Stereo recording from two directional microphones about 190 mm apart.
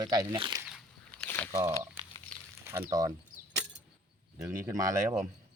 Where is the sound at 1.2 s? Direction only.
10° left (ahead or behind).